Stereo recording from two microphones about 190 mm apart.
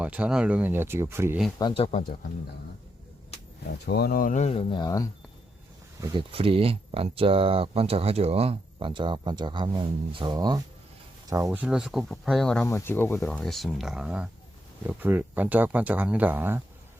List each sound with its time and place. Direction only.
0.0 s speech: 5° right (ahead or behind)
1.5 s speech: 25° left (ahead or behind)
3.8 s speech: 55° left (ahead or behind); by 5.0 s 20° left (ahead or behind)
6.0 s speech: 30° right (ahead or behind)
11.6 s speech: 5° right (ahead or behind)
12.6 s speech: 15° left (ahead or behind); by 16.6 s 10° right (ahead or behind)